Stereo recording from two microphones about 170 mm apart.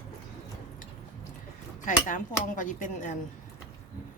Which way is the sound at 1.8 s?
50° left (ahead or behind).